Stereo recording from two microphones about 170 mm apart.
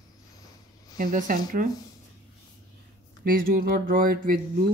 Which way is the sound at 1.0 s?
50° right (ahead or behind).